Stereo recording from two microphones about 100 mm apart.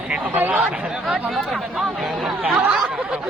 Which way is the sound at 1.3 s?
Centre (ahead or behind).